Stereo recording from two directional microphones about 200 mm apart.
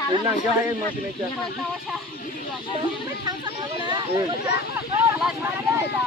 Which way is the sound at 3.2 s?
20° right (ahead or behind).